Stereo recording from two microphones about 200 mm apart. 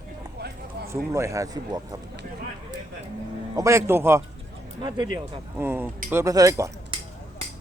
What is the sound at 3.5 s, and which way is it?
Speech, 15° right (ahead or behind).